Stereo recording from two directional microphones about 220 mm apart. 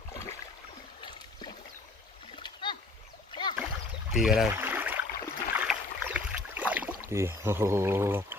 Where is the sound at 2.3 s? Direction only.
20° left (ahead or behind).